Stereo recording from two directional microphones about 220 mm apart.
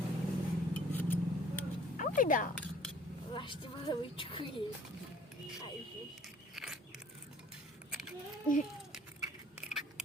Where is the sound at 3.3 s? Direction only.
25° left (ahead or behind).